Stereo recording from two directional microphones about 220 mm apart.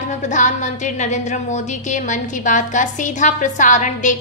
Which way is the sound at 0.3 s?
35° left (ahead or behind).